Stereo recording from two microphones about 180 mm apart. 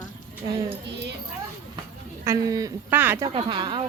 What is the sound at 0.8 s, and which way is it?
Speech, 75° right (ahead or behind).